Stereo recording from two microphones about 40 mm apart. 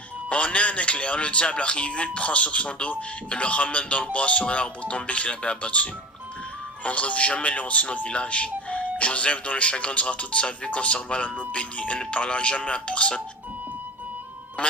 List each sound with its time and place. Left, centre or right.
0.3 s a man's voice: left
14.6 s music: left